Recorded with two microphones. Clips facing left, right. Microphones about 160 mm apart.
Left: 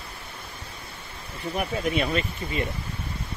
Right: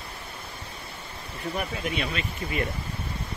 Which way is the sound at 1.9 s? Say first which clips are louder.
Left 5 dB; 40° left (ahead or behind).